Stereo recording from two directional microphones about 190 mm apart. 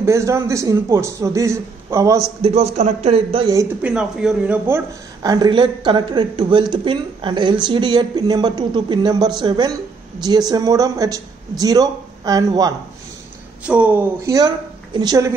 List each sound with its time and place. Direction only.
0.0 s speech: 15° right (ahead or behind)
2.4 s speech: 35° right (ahead or behind)
3.8 s speech: 5° right (ahead or behind)
13.7 s speech: 5° right (ahead or behind)